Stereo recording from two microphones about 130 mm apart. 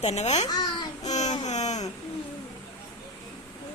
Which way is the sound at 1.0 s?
65° left (ahead or behind).